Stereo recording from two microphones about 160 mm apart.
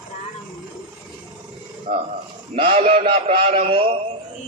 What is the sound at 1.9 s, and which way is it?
Speech, 65° right (ahead or behind).